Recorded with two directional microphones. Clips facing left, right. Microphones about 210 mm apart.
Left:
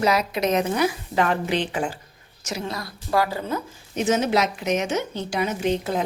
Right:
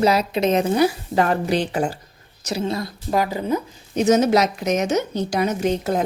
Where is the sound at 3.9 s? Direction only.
40° right (ahead or behind).